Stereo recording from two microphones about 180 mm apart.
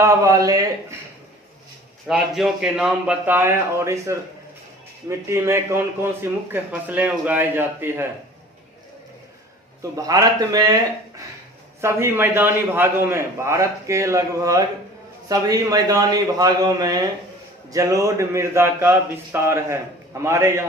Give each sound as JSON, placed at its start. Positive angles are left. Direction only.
{"t": 0.0, "sound": "a man's voice", "side_deg": -15}
{"t": 2.0, "sound": "a man's voice", "side_deg": 0}
{"t": 9.9, "sound": "a man's voice", "side_deg": -20}
{"t": 11.8, "sound": "a man's voice", "side_deg": -15}